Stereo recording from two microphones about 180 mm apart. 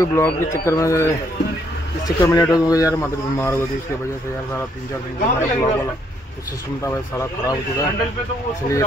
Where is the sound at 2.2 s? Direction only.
20° left (ahead or behind).